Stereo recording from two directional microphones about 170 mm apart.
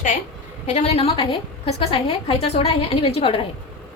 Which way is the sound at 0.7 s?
40° left (ahead or behind).